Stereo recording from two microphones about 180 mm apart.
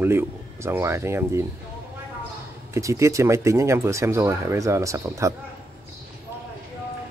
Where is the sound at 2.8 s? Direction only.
15° right (ahead or behind).